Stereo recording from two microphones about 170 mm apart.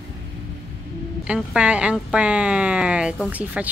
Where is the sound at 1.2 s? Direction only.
5° right (ahead or behind).